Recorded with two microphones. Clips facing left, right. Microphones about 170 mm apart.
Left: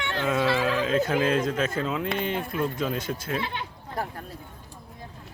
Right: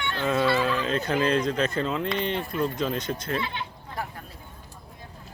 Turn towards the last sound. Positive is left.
turn(degrees=45)  # may be behind; listen again after turning